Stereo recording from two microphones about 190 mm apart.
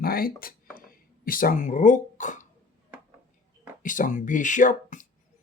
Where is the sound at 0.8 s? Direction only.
50° left (ahead or behind).